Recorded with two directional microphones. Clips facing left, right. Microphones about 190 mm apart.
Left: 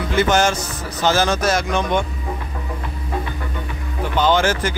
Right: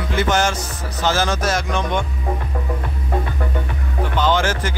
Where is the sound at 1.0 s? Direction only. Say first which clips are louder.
Left 2 dB; 15° left (ahead or behind).